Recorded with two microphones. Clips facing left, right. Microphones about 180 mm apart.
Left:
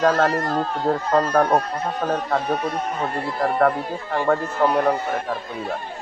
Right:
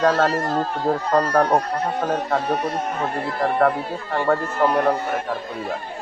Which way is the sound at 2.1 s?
10° right (ahead or behind).